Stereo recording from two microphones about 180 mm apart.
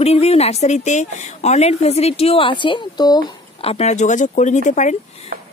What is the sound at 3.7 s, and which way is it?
Speech, 40° left (ahead or behind).